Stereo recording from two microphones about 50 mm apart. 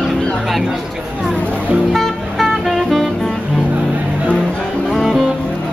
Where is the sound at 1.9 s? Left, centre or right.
Centre.